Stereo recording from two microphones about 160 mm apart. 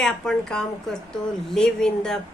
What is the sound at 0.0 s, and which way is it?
A woman's voice, 5° left (ahead or behind).